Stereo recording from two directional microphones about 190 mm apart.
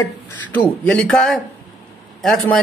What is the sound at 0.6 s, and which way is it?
A man's voice, 5° left (ahead or behind).